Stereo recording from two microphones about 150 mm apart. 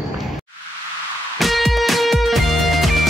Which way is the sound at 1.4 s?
Centre (ahead or behind).